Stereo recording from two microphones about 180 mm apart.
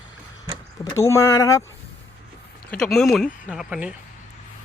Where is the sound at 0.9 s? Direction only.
15° left (ahead or behind).